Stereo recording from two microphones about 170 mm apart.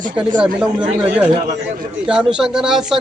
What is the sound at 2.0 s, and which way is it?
Speech, 5° right (ahead or behind).